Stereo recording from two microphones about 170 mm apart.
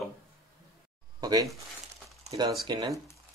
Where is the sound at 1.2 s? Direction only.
20° right (ahead or behind).